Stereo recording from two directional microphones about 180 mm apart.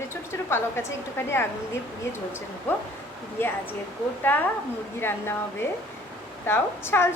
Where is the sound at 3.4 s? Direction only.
15° left (ahead or behind).